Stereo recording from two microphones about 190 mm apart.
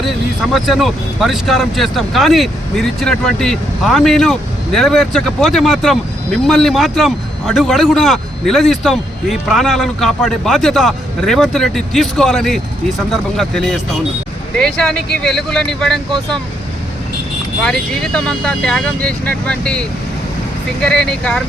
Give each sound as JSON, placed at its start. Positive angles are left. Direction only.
{"t": 0.5, "sound": "speech", "side_deg": 0}
{"t": 17.6, "sound": "speech", "side_deg": 5}
{"t": 20.8, "sound": "speech", "side_deg": 5}